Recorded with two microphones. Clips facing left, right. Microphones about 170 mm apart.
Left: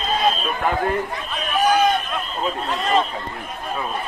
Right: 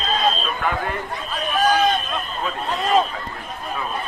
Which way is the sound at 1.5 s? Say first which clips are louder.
Left 1 dB; 20° left (ahead or behind).